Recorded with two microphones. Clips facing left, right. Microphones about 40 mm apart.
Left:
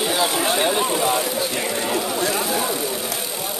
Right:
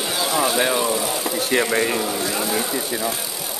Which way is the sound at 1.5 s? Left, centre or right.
Right.